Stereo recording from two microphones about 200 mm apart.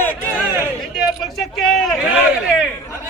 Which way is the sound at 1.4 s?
Centre (ahead or behind).